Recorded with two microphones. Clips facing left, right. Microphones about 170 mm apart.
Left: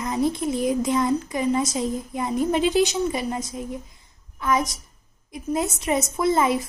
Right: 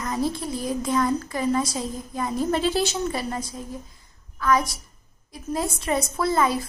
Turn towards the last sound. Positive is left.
turn(degrees=20)  # may be behind; listen again after turning